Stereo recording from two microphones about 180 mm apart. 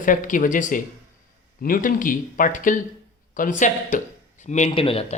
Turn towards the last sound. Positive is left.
turn(degrees=30)  # may be behind; listen again after turning